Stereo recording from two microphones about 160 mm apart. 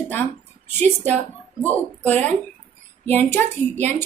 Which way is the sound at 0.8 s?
10° left (ahead or behind).